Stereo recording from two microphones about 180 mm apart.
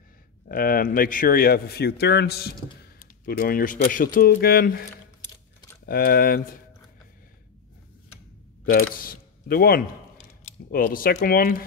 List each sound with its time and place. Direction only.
0.5 s speech: 55° left (ahead or behind)
5.9 s speech: 55° left (ahead or behind)
8.9 s speech: 50° left (ahead or behind)